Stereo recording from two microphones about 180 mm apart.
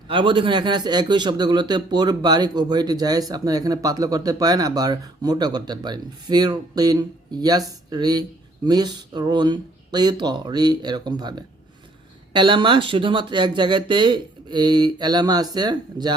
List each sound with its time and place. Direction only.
0.1 s a man's voice: 30° right (ahead or behind)